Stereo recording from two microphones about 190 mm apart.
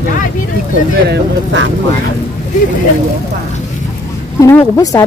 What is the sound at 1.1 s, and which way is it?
Vehicle, 75° right (ahead or behind).